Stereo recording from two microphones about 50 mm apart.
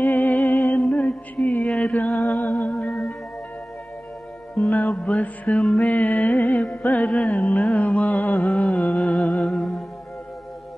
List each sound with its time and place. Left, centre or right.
0.0 s music: left
4.6 s music: left
9.5 s music: centre